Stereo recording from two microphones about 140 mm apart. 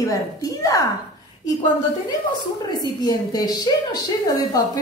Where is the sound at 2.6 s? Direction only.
30° left (ahead or behind).